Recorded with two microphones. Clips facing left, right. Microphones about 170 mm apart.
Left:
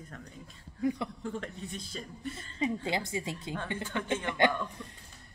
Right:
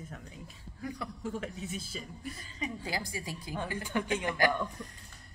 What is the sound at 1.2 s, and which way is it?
Speech, 5° right (ahead or behind).